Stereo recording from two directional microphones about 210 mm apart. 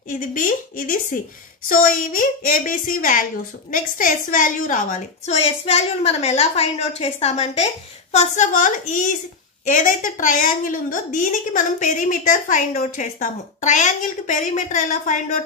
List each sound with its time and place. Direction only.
0.1 s a woman's voice: 40° left (ahead or behind)